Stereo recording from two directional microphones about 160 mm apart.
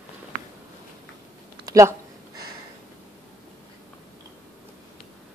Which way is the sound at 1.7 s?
20° right (ahead or behind).